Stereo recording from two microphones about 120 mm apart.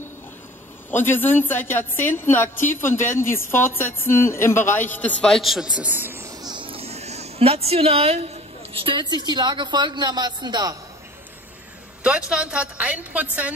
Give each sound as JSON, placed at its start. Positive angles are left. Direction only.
{"t": 0.9, "sound": "a woman's voice", "side_deg": 15}
{"t": 5.3, "sound": "a woman's voice", "side_deg": 0}
{"t": 6.4, "sound": "a sound", "side_deg": -40}
{"t": 8.7, "sound": "a woman's voice", "side_deg": -45}
{"t": 12.0, "sound": "a woman's voice", "side_deg": -10}